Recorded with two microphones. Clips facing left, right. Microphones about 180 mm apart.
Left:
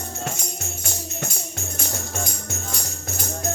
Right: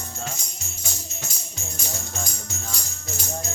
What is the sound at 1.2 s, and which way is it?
Music, 60° left (ahead or behind).